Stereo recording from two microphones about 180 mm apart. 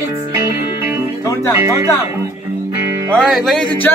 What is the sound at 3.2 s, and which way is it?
Speech, centre (ahead or behind).